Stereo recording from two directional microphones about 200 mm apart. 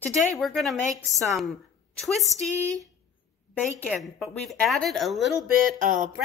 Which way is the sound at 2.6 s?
15° right (ahead or behind).